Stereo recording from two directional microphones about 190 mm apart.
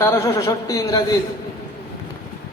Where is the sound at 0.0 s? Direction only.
15° left (ahead or behind).